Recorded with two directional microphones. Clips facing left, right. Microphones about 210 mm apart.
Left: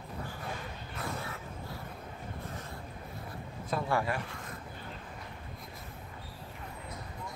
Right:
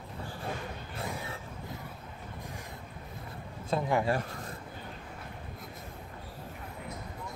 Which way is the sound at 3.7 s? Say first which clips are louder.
Right 3 dB; 20° right (ahead or behind).